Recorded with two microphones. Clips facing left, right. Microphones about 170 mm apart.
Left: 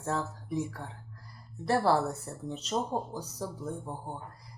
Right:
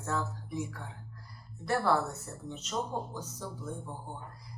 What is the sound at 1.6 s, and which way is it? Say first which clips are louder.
Speech: left 3 dB; 30° left (ahead or behind).